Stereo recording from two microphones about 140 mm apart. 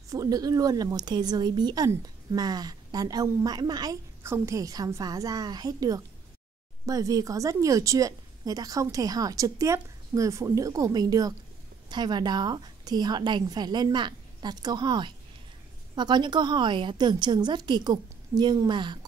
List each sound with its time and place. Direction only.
0.1 s a woman's voice: 25° right (ahead or behind)